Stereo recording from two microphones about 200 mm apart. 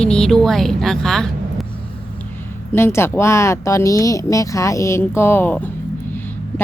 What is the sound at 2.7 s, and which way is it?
Speech, 10° left (ahead or behind).